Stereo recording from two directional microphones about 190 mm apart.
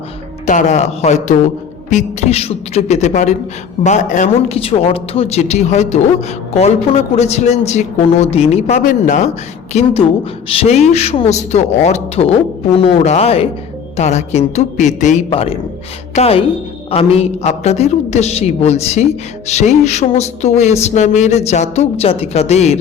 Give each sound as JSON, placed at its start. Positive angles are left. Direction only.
{"t": 0.4, "sound": "speech", "side_deg": 40}